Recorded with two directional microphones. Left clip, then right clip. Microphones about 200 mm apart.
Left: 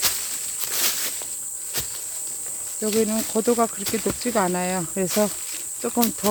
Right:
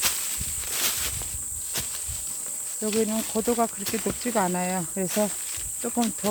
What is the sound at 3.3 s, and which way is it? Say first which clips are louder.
Speech: left 5 dB; 20° left (ahead or behind).